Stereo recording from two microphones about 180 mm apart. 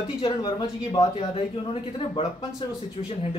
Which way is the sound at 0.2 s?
25° left (ahead or behind).